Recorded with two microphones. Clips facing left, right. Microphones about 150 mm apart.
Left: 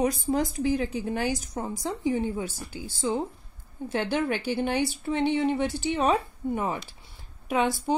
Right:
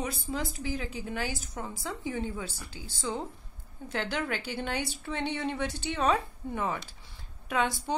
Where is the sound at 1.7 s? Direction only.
15° left (ahead or behind).